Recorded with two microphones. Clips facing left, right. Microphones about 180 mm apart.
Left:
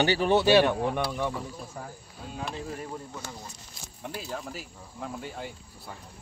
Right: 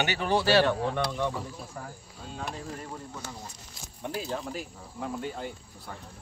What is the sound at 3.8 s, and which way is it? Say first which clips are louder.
Speech: right 4 dB; centre (ahead or behind).